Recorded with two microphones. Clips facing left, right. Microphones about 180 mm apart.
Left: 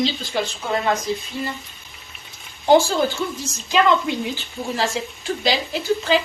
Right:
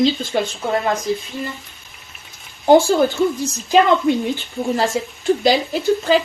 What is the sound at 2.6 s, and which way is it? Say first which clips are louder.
Speech: right 3 dB; 55° right (ahead or behind).